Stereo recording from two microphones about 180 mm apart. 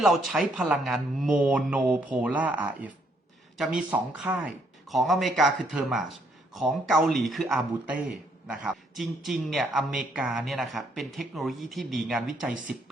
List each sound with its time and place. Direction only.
0.0 s speech: centre (ahead or behind)
3.9 s speech: 5° right (ahead or behind)